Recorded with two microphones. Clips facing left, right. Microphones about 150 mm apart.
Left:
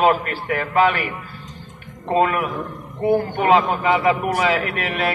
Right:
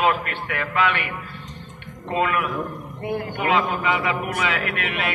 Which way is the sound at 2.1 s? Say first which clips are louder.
Left 4 dB; 40° left (ahead or behind).